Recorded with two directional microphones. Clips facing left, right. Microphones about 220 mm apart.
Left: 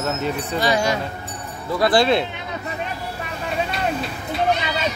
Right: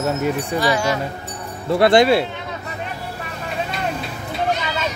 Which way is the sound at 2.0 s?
10° right (ahead or behind).